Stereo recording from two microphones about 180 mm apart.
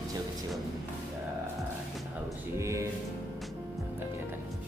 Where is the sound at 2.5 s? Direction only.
15° right (ahead or behind).